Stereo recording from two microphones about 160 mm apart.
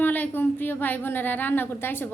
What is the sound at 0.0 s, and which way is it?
A woman's voice, 10° left (ahead or behind).